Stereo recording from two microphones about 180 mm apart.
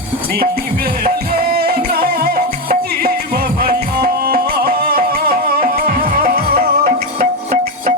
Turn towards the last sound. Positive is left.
turn(degrees=-50)  # may be behind; listen again after turning